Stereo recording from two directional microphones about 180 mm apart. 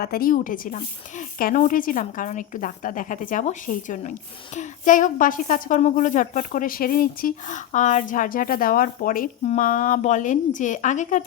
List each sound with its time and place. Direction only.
0.0 s a woman's voice: 55° left (ahead or behind)